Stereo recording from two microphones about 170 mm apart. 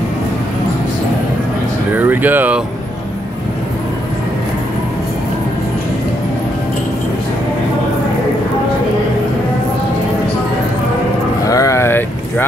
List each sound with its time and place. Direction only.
2.0 s speech: 10° right (ahead or behind)
11.4 s vehicle: 20° left (ahead or behind)